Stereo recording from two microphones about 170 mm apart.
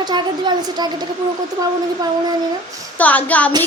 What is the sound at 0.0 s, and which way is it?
A woman's voice, 25° right (ahead or behind).